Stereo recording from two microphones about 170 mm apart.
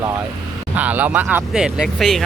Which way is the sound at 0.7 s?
10° right (ahead or behind).